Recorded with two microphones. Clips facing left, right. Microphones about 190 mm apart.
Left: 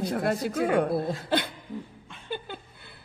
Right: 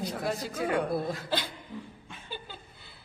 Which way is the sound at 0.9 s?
25° left (ahead or behind).